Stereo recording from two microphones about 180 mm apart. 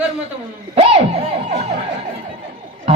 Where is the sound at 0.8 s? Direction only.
30° right (ahead or behind).